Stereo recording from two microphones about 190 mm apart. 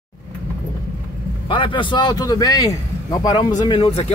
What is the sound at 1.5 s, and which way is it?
A man's voice, 25° left (ahead or behind).